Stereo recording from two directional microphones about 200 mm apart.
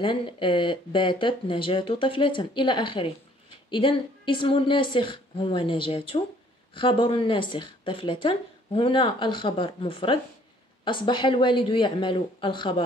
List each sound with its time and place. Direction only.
0.0 s speech: 25° left (ahead or behind)